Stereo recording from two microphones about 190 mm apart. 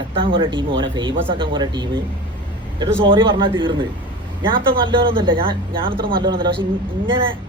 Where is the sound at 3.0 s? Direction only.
25° right (ahead or behind).